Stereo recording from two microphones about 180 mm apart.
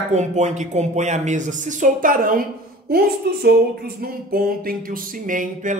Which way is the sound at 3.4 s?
60° right (ahead or behind).